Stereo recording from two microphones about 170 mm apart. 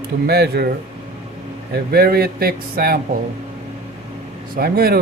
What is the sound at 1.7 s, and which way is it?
Speech, 65° right (ahead or behind).